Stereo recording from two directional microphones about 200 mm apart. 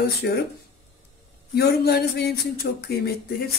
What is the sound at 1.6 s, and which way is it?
Speech, 55° left (ahead or behind).